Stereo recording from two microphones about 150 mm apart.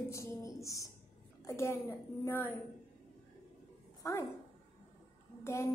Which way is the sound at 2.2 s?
15° left (ahead or behind).